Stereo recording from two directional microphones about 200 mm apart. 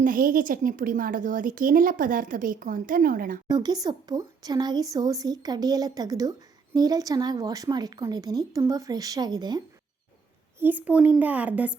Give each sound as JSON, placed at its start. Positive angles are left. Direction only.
{"t": 0.0, "sound": "a woman's voice", "side_deg": -45}
{"t": 3.4, "sound": "speech", "side_deg": -20}
{"t": 10.6, "sound": "a woman's voice", "side_deg": -10}